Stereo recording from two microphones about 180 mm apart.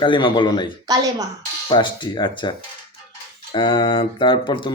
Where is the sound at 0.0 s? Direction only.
25° left (ahead or behind).